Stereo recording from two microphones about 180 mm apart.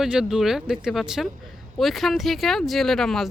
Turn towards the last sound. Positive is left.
turn(degrees=0)  # may be behind; listen again after turning